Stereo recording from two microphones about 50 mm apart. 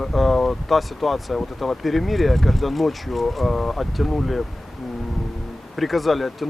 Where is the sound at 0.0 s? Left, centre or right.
Centre.